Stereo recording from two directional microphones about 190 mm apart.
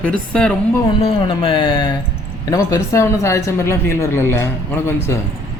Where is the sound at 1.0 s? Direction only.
30° left (ahead or behind); by 4.9 s 15° left (ahead or behind).